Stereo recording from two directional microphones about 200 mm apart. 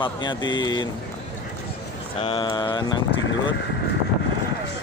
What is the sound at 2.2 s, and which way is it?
Speech, 25° left (ahead or behind).